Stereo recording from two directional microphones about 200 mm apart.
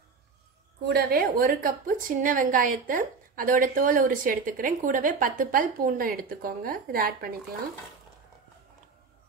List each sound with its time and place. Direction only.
0.8 s a woman's voice: 50° right (ahead or behind)